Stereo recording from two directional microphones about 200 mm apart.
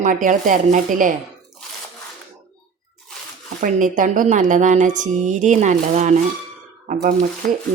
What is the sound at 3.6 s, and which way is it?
Speech, 40° right (ahead or behind).